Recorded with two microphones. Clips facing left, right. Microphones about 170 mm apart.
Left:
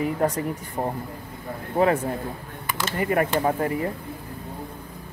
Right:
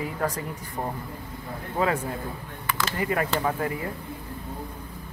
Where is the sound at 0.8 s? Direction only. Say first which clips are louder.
Left 2 dB; 25° left (ahead or behind).